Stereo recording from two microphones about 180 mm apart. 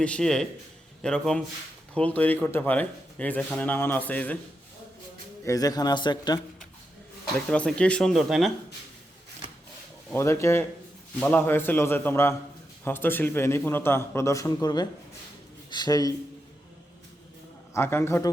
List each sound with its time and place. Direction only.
0.0 s a man's voice: 5° left (ahead or behind)
5.5 s speech: 20° left (ahead or behind)
7.5 s speech: 5° left (ahead or behind)
10.2 s a man's voice: 15° left (ahead or behind)
17.7 s a man's voice: 15° left (ahead or behind)